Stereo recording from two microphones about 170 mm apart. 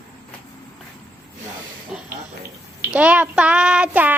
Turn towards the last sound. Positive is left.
turn(degrees=-10)  # may be behind; listen again after turning